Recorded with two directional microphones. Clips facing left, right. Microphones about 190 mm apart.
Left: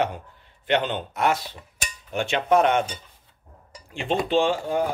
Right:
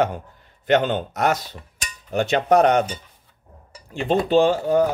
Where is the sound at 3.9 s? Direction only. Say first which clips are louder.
Right 5 dB; 40° right (ahead or behind).